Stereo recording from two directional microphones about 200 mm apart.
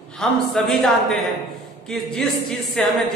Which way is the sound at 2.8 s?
5° left (ahead or behind).